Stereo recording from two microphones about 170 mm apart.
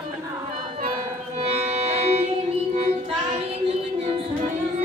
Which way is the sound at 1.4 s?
35° right (ahead or behind).